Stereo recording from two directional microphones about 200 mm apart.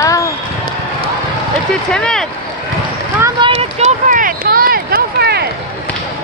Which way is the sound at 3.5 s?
30° right (ahead or behind).